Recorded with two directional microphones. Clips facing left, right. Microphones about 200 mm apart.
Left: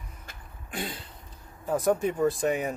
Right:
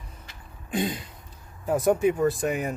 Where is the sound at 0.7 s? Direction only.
20° right (ahead or behind).